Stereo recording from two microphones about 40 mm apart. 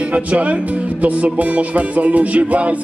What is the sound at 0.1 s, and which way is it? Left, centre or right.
Music, right.